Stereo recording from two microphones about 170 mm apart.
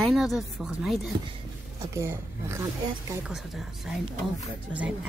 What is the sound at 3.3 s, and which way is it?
Speech, centre (ahead or behind).